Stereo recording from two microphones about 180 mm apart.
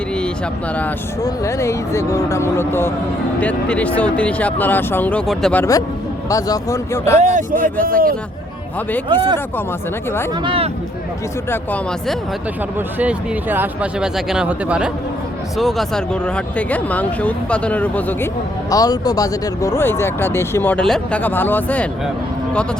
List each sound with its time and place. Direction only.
1.2 s speech: 15° left (ahead or behind)
6.2 s speech: 20° left (ahead or behind)
7.2 s speech: 45° right (ahead or behind)
9.0 s speech: 25° right (ahead or behind)
10.4 s speech: 30° right (ahead or behind)
11.5 s speech: 10° left (ahead or behind)
13.0 s speech: 10° right (ahead or behind); by 18.3 s 10° left (ahead or behind)
18.7 s speech: 20° left (ahead or behind)